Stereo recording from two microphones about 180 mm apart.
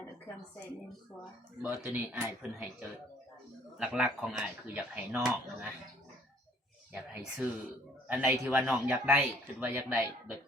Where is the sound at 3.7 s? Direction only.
5° right (ahead or behind).